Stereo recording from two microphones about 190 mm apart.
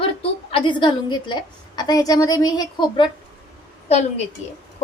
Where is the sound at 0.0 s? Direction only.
30° left (ahead or behind).